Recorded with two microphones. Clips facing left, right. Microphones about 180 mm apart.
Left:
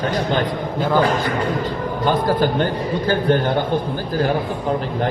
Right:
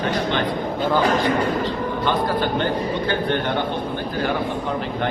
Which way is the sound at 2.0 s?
40° left (ahead or behind).